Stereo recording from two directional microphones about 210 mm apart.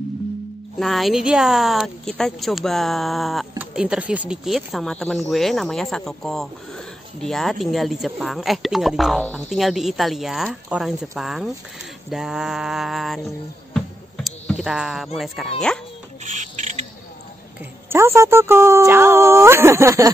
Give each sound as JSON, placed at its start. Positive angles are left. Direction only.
{"t": 0.7, "sound": "speech", "side_deg": 0}
{"t": 13.7, "sound": "music", "side_deg": 5}
{"t": 15.1, "sound": "speech", "side_deg": 0}
{"t": 16.3, "sound": "a sound", "side_deg": -35}
{"t": 17.8, "sound": "speech", "side_deg": -10}